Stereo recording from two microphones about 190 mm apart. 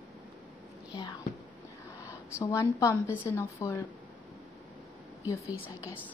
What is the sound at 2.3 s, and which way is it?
A woman's voice, 15° left (ahead or behind).